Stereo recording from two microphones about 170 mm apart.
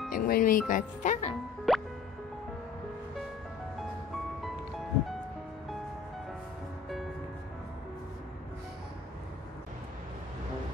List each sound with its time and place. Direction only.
0.1 s speech: 55° left (ahead or behind)
1.7 s music: centre (ahead or behind)